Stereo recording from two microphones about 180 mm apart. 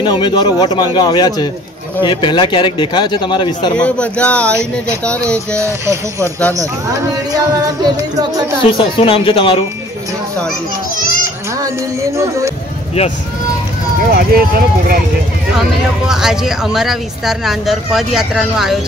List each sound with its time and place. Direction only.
0.0 s speech: 25° left (ahead or behind)
3.7 s speech: 5° left (ahead or behind)
5.6 s music: 15° right (ahead or behind)
6.5 s speech: 20° right (ahead or behind)
8.7 s speech: 30° left (ahead or behind)
11.6 s music: 15° right (ahead or behind)
14.1 s speech: 55° right (ahead or behind)
16.1 s speech: 5° right (ahead or behind)